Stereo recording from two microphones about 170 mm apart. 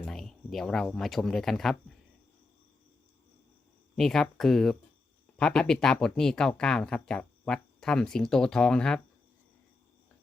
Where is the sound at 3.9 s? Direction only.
Centre (ahead or behind).